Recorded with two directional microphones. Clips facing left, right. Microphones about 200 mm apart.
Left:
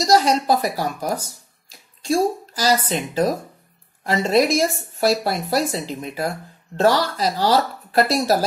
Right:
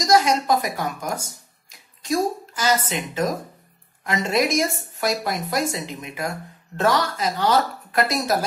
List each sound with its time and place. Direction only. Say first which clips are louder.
0.0 s speech: left 2 dB; 30° left (ahead or behind)